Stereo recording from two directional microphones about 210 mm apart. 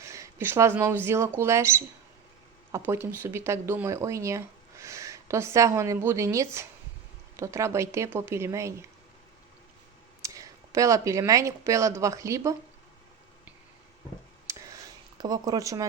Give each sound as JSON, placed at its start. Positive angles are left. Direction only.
{"t": 0.0, "sound": "speech", "side_deg": -15}
{"t": 10.2, "sound": "speech", "side_deg": -15}
{"t": 14.4, "sound": "a sound", "side_deg": -15}
{"t": 15.2, "sound": "speech", "side_deg": -15}